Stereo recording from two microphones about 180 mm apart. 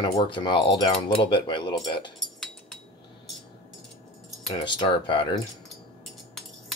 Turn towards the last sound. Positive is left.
turn(degrees=25)  # may be behind; listen again after turning